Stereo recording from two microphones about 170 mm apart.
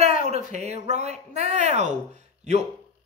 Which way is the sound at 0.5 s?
45° right (ahead or behind).